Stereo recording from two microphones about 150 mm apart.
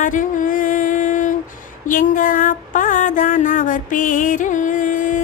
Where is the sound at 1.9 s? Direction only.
65° left (ahead or behind).